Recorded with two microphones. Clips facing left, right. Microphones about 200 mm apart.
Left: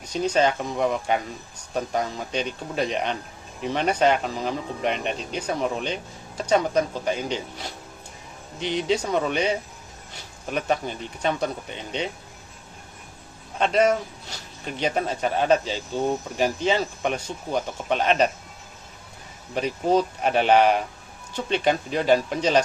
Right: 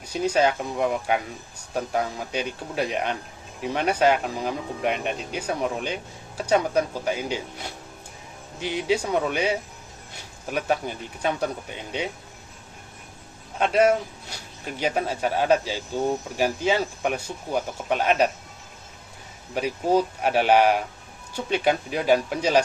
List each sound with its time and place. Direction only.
0.0 s speech: 10° right (ahead or behind)
13.6 s speech: 10° right (ahead or behind)
19.5 s speech: 10° right (ahead or behind)